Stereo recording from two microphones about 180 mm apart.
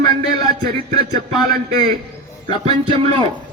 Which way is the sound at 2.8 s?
30° right (ahead or behind).